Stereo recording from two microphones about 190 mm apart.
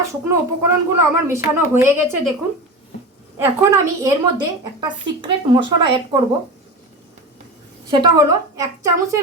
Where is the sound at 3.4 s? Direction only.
15° right (ahead or behind).